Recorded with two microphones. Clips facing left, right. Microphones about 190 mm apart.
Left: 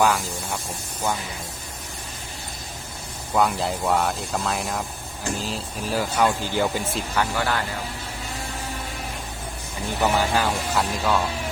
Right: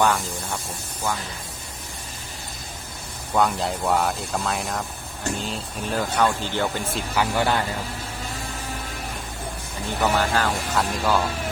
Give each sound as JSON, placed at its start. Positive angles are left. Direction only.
{"t": 0.0, "sound": "speech", "side_deg": 0}
{"t": 3.3, "sound": "speech", "side_deg": 0}
{"t": 7.3, "sound": "speech", "side_deg": -20}
{"t": 10.0, "sound": "speech", "side_deg": 10}